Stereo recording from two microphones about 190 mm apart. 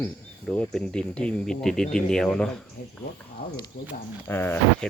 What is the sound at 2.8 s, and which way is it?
Speech, 45° left (ahead or behind).